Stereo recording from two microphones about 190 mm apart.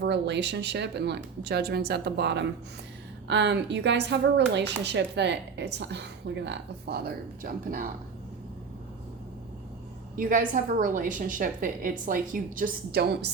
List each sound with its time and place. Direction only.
0.0 s a woman's voice: 65° right (ahead or behind)
10.2 s a woman's voice: 45° right (ahead or behind)